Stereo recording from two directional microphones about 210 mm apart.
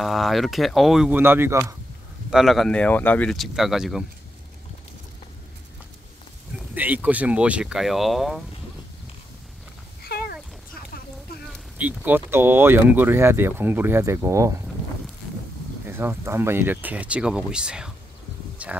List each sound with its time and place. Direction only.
0.0 s speech: centre (ahead or behind)
2.3 s speech: centre (ahead or behind)
6.7 s speech: 10° right (ahead or behind)
10.0 s cat: 45° left (ahead or behind)
11.8 s speech: 10° right (ahead or behind)
15.9 s speech: 10° right (ahead or behind)
18.6 s a sound: 5° right (ahead or behind)